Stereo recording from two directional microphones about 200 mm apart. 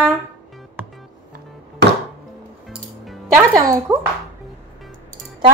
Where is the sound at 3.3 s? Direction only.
15° right (ahead or behind).